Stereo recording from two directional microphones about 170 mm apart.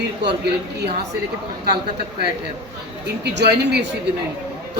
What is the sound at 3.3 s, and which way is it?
Speech, 80° right.